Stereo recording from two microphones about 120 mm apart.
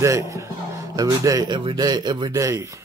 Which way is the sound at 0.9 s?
30° right (ahead or behind).